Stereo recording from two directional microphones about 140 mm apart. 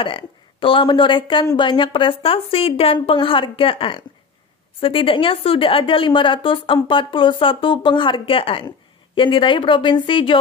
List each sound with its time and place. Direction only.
0.0 s a woman's voice: 40° left (ahead or behind)